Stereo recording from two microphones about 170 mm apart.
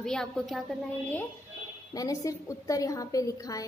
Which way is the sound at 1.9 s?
20° left (ahead or behind).